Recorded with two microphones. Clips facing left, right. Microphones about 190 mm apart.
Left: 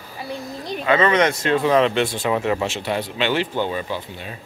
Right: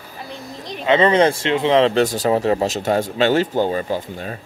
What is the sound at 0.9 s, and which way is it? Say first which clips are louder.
Speech: right 3 dB; 30° right (ahead or behind).